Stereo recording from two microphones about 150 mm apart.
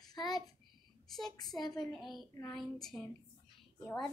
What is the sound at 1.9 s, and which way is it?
Speech, centre (ahead or behind).